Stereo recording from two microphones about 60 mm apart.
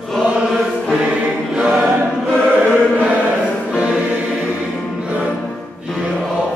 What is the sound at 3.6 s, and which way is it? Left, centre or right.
Choir, centre.